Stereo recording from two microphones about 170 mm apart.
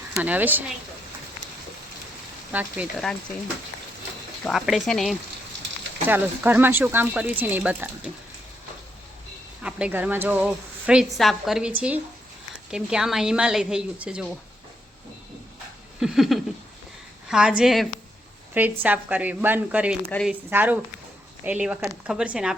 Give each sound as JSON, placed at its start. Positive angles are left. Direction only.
{"t": 0.2, "sound": "a woman's voice", "side_deg": -10}
{"t": 2.5, "sound": "a woman's voice", "side_deg": -10}
{"t": 4.4, "sound": "a woman's voice", "side_deg": 0}
{"t": 6.1, "sound": "a woman's voice", "side_deg": -10}
{"t": 9.6, "sound": "a woman's voice", "side_deg": -5}
{"t": 16.0, "sound": "a woman's voice", "side_deg": -5}